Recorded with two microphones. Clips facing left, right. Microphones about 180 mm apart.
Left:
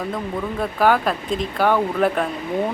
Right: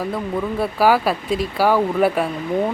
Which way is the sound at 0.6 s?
5° right (ahead or behind).